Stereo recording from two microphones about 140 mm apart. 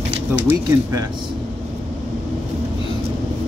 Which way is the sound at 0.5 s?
25° right (ahead or behind).